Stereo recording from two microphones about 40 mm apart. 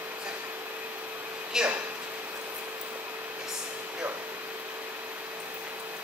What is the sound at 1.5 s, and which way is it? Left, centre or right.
Speech, centre.